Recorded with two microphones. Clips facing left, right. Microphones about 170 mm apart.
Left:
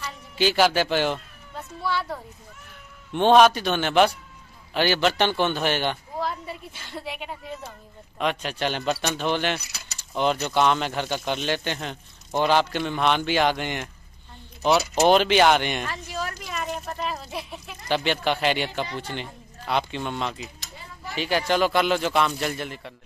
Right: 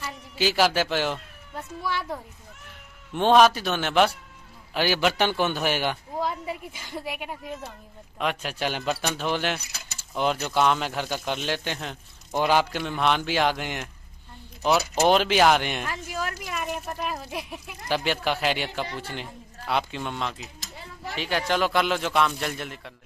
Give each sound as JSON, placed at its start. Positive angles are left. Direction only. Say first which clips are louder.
{"t": 0.0, "sound": "speech", "louder": "left 2 dB", "side_deg": -5}
{"t": 1.8, "sound": "a man's voice", "louder": "left 3 dB", "side_deg": -15}
{"t": 3.1, "sound": "a man's voice", "louder": "left 2 dB", "side_deg": 0}